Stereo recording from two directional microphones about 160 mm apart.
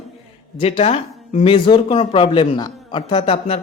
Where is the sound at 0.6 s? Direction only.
40° left (ahead or behind).